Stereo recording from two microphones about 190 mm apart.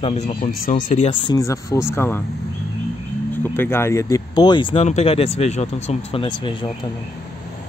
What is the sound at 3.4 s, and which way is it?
Speech, 10° left (ahead or behind).